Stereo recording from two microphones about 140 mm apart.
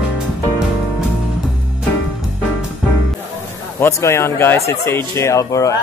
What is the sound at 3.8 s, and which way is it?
Speech, 20° left (ahead or behind).